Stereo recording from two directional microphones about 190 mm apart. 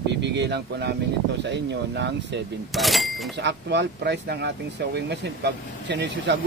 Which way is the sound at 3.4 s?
65° right (ahead or behind).